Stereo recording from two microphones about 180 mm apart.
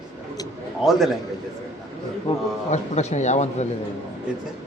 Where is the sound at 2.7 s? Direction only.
40° left (ahead or behind).